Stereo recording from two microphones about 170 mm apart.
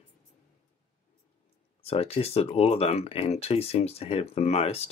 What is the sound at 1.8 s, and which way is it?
Speech, 35° left (ahead or behind).